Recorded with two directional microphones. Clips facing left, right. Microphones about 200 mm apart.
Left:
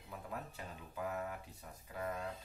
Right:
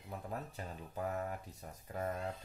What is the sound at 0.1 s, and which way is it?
Speech, 40° right (ahead or behind).